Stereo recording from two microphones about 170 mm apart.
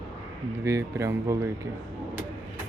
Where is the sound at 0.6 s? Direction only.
15° right (ahead or behind).